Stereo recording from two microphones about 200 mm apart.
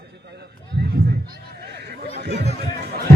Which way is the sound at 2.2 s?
55° right (ahead or behind).